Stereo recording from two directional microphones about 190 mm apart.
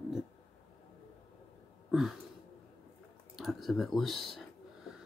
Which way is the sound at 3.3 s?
Centre (ahead or behind).